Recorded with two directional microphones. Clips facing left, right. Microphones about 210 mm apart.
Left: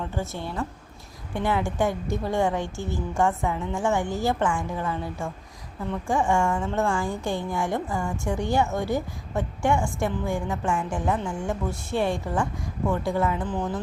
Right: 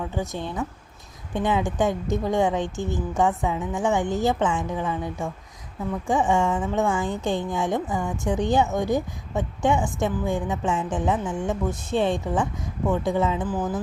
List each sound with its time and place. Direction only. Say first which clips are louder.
0.1 s a woman's voice: right 2 dB; 15° right (ahead or behind)
13.4 s speech: right 2 dB; 5° right (ahead or behind)